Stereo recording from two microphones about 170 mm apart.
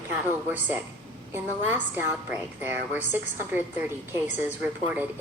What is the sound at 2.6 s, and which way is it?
A woman's voice, 10° right (ahead or behind).